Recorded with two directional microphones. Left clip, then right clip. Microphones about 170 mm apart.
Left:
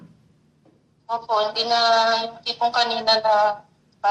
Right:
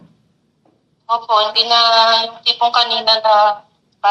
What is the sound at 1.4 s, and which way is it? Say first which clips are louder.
Speech: right 6 dB; 20° left (ahead or behind).